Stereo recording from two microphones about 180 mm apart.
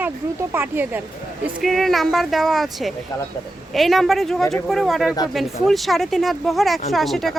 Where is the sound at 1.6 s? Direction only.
Centre (ahead or behind).